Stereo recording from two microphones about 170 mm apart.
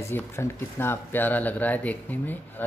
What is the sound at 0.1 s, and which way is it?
Speech, 15° left (ahead or behind).